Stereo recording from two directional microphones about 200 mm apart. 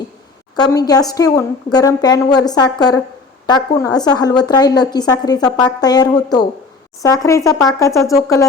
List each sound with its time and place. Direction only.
0.5 s a woman's voice: 20° left (ahead or behind)